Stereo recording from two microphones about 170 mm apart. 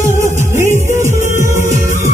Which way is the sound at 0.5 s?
15° right (ahead or behind).